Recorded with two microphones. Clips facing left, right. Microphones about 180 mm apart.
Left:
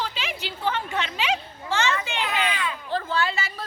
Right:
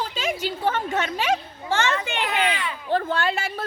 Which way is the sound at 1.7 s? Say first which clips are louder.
Right 2 dB; 55° right (ahead or behind).